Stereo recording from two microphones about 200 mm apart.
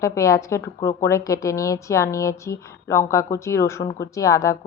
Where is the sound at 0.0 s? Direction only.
15° left (ahead or behind).